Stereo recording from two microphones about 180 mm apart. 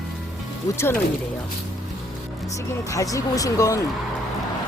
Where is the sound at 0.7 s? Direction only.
15° left (ahead or behind).